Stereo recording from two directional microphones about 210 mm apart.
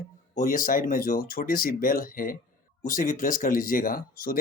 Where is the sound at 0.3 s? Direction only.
40° left (ahead or behind).